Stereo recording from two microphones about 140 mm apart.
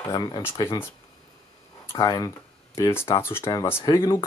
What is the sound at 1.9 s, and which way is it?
Speech, 30° left (ahead or behind).